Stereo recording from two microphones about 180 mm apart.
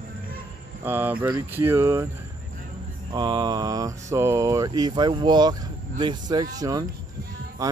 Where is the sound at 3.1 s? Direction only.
25° right (ahead or behind).